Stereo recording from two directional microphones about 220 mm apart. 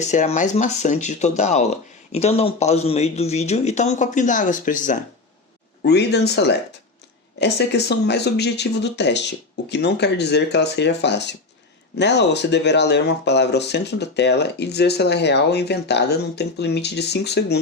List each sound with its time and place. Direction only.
0.0 s speech: 30° left (ahead or behind)
5.8 s speech: 50° left (ahead or behind)